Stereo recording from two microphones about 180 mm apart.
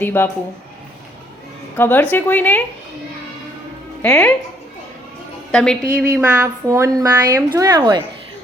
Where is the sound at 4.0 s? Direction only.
5° left (ahead or behind).